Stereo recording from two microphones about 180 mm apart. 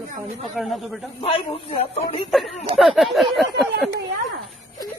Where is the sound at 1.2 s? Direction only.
30° left (ahead or behind).